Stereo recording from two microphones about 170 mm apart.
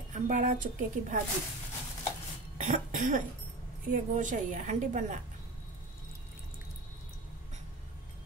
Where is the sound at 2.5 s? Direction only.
45° right (ahead or behind).